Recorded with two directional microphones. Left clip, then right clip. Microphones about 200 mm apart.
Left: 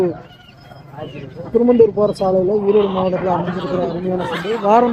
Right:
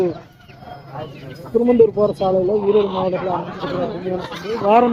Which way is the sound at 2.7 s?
20° left (ahead or behind).